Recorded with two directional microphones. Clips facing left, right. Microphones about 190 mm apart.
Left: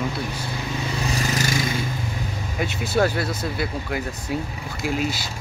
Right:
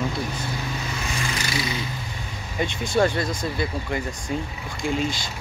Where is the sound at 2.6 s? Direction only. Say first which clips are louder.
Even; 5° left (ahead or behind).